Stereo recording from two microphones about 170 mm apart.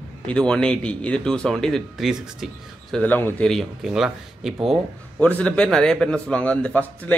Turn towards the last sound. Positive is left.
turn(degrees=10)  # may be behind; listen again after turning